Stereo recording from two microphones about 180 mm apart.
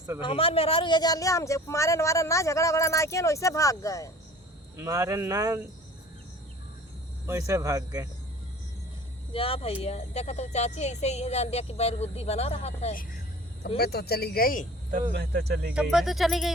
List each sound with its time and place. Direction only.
0.2 s speech: 30° left (ahead or behind)
4.8 s speech: 15° right (ahead or behind)
7.3 s speech: 15° right (ahead or behind)
9.3 s speech: 30° left (ahead or behind)
13.7 s speech: 60° left (ahead or behind)
15.1 s speech: 70° right (ahead or behind)
15.7 s speech: 5° right (ahead or behind)